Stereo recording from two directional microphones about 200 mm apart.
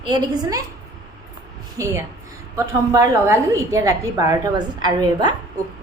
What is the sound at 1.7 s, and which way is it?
A woman's voice, 15° right (ahead or behind).